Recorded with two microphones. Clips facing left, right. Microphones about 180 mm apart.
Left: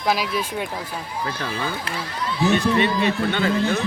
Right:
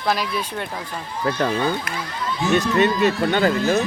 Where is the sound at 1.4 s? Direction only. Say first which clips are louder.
Right 6 dB; 45° right (ahead or behind).